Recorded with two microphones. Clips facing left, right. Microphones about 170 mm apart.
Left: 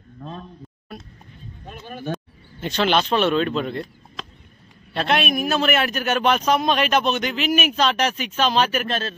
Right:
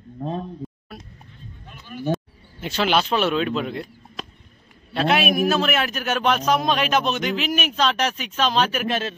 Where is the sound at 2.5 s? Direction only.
5° right (ahead or behind).